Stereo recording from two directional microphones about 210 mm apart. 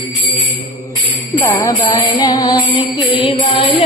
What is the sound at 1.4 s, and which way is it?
Music, 15° left (ahead or behind).